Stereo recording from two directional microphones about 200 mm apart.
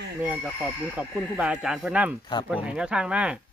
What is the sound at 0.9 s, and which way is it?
Speech, 5° right (ahead or behind).